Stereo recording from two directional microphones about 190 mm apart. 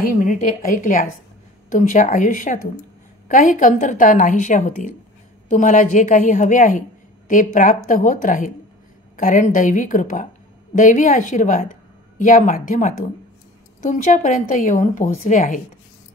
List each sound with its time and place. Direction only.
0.1 s a woman's voice: 45° left (ahead or behind)